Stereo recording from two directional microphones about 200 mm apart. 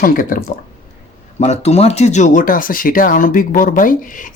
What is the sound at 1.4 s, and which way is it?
Speech, 35° left (ahead or behind).